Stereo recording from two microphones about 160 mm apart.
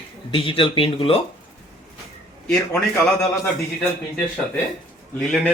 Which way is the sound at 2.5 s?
5° left (ahead or behind).